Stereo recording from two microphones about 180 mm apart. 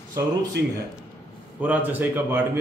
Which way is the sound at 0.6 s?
70° right (ahead or behind).